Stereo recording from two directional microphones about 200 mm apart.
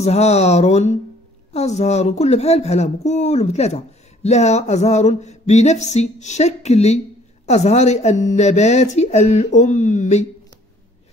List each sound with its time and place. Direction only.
0.0 s speech: 35° left (ahead or behind)